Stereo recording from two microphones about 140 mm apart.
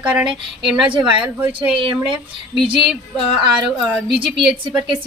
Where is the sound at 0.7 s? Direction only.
35° right (ahead or behind).